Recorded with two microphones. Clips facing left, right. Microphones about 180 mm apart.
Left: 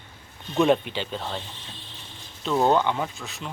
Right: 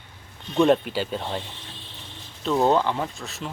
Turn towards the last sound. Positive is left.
turn(degrees=0)  # may be behind; listen again after turning